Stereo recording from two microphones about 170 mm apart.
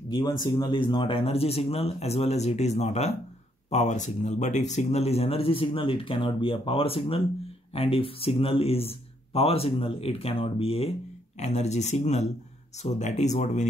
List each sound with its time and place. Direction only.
0.1 s speech: 25° left (ahead or behind); by 13.7 s 45° left (ahead or behind)